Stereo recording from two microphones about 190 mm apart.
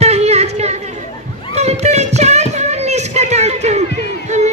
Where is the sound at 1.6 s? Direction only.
35° right (ahead or behind).